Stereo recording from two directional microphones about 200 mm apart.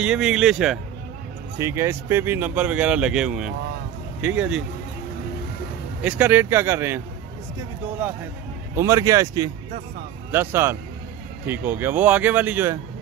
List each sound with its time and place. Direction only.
0.0 s speech: 5° right (ahead or behind)
1.6 s speech: 15° right (ahead or behind)
6.0 s speech: 10° right (ahead or behind)
8.7 s speech: 15° right (ahead or behind)